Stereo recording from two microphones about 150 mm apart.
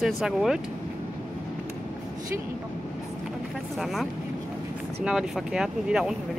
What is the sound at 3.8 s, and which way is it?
Speech, centre (ahead or behind).